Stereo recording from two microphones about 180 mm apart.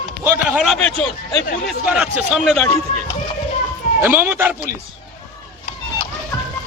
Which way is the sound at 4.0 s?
10° right (ahead or behind).